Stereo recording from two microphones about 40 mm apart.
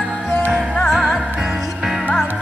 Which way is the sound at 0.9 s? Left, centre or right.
Centre.